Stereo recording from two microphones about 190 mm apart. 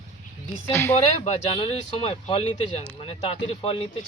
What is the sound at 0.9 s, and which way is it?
Speech, 35° left (ahead or behind).